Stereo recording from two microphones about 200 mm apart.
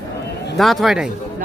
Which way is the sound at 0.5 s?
Centre (ahead or behind).